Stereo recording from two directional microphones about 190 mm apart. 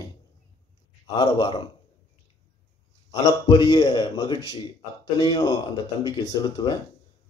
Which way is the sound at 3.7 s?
25° left (ahead or behind).